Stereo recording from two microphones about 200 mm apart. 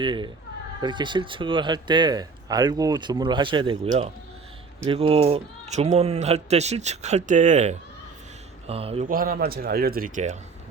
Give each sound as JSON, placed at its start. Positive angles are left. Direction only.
{"t": 0.0, "sound": "speech", "side_deg": -25}
{"t": 9.0, "sound": "speech", "side_deg": -45}